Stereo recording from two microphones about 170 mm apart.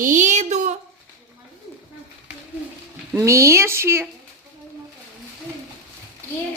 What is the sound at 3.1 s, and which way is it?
Speech, 15° right (ahead or behind).